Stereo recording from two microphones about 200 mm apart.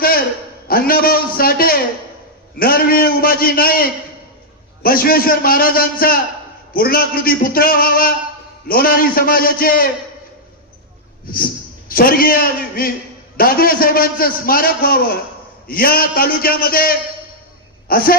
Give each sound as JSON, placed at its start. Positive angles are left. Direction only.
{"t": 0.7, "sound": "a man's voice", "side_deg": 45}
{"t": 11.3, "sound": "a man's voice", "side_deg": 45}